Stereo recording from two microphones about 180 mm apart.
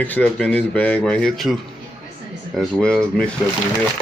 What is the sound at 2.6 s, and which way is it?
Speech, 5° left (ahead or behind).